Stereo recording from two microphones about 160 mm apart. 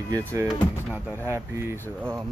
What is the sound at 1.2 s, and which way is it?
Speech, 15° right (ahead or behind).